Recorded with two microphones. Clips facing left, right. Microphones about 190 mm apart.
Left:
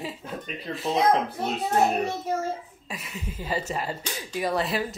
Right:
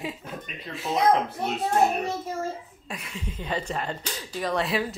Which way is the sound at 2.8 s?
Centre (ahead or behind).